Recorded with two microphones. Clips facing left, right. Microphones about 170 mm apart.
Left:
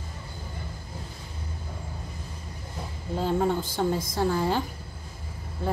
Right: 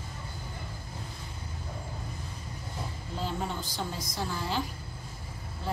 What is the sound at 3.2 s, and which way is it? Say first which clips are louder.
A woman's voice: left 9 dB; 50° left (ahead or behind).